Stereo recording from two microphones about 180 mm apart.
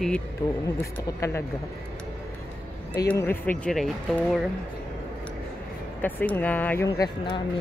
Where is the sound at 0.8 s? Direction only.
15° left (ahead or behind).